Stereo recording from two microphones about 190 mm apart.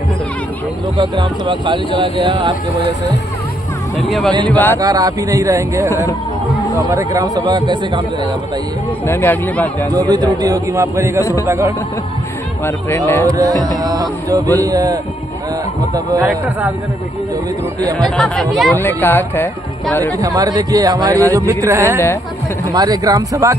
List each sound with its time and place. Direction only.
1.1 s speech: 25° right (ahead or behind)
4.5 s speech: 10° left (ahead or behind)
4.7 s speech: 20° right (ahead or behind)
9.0 s speech: 10° left (ahead or behind)
9.9 s speech: 20° right (ahead or behind)
12.6 s speech: 15° left (ahead or behind)
13.3 s speech: 20° right (ahead or behind)
17.9 s speech: centre (ahead or behind)
20.2 s speech: 20° right (ahead or behind)